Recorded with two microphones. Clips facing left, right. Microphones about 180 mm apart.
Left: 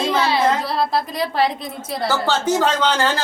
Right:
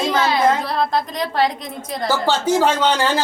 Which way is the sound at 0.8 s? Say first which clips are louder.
Even; 5° left (ahead or behind).